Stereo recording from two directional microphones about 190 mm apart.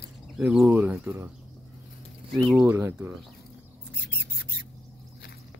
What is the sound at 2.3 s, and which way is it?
Speech, centre (ahead or behind).